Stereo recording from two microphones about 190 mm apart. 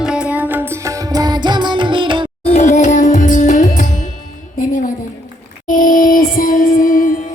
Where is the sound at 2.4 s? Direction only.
35° left (ahead or behind).